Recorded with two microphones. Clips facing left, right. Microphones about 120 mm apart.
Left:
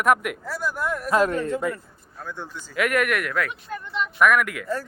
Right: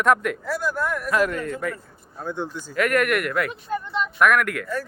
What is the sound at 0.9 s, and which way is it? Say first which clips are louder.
Speech: left 5 dB; 30° left (ahead or behind).